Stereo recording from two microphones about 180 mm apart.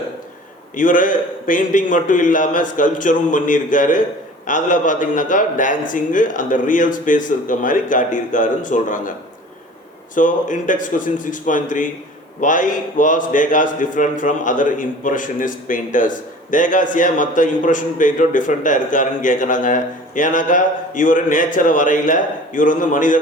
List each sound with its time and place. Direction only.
0.8 s a man's voice: 45° left (ahead or behind)
10.2 s a man's voice: 45° left (ahead or behind)